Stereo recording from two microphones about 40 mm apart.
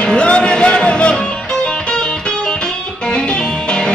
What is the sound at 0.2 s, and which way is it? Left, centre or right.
Music, left.